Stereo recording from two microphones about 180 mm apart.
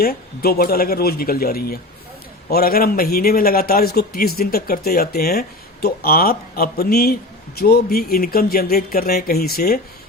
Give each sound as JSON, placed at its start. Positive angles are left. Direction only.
{"t": 0.0, "sound": "a man's voice", "side_deg": 60}